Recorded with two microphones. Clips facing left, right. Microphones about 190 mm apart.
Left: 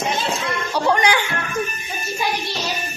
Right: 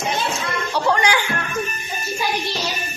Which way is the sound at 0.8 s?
20° left (ahead or behind).